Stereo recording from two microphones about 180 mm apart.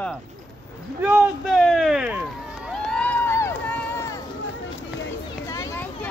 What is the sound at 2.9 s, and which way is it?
Crowd, 5° left (ahead or behind).